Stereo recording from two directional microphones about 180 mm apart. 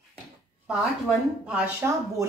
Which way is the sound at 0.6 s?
5° right (ahead or behind).